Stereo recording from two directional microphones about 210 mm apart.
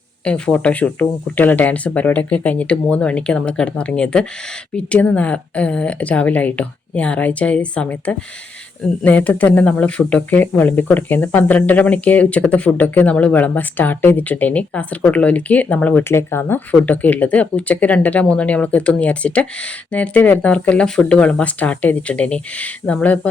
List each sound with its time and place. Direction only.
0.3 s speech: 5° left (ahead or behind)